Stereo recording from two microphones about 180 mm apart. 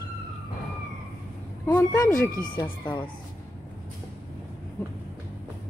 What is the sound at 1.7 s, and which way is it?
Speech, 15° left (ahead or behind).